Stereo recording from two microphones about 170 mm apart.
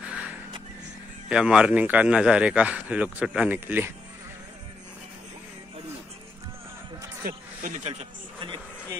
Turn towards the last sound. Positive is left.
turn(degrees=-45)  # may be behind; listen again after turning